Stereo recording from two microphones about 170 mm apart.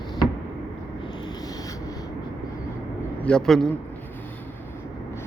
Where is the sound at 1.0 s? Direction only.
25° left (ahead or behind).